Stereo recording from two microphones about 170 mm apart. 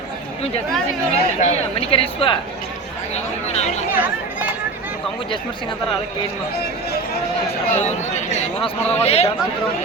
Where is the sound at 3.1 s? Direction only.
40° left (ahead or behind).